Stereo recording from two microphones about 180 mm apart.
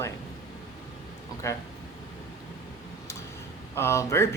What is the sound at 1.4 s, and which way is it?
Speech, 15° left (ahead or behind).